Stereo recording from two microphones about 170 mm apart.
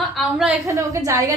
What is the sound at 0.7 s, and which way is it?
Speech, 20° right (ahead or behind).